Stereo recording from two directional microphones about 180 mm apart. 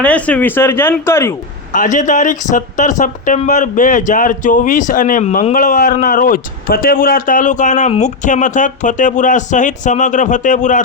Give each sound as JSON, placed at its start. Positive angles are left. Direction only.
{"t": 0.0, "sound": "speech", "side_deg": 5}
{"t": 1.7, "sound": "speech", "side_deg": 45}